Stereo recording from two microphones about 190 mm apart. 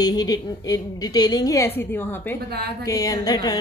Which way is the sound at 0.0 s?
20° left (ahead or behind).